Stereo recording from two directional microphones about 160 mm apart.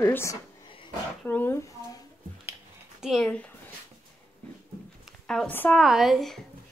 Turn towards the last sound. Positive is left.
turn(degrees=0)  # may be behind; listen again after turning